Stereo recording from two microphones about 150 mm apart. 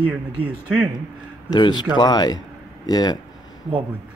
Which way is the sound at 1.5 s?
30° left (ahead or behind).